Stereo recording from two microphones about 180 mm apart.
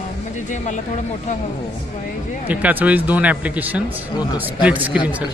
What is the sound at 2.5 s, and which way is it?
Speech, 10° right (ahead or behind).